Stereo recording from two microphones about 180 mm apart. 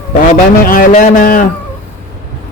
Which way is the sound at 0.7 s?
45° left (ahead or behind).